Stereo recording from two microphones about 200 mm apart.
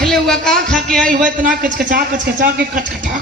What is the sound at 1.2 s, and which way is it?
A man's voice, 45° right (ahead or behind).